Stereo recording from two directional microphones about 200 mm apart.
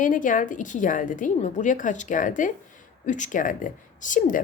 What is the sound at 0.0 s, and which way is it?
A woman's voice, 40° left (ahead or behind).